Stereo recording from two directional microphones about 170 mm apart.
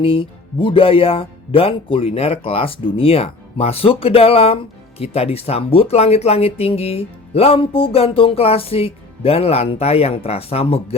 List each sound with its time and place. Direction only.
0.0 s speech: 30° left (ahead or behind)